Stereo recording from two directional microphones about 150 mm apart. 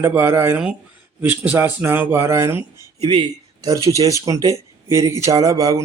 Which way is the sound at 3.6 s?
20° right (ahead or behind).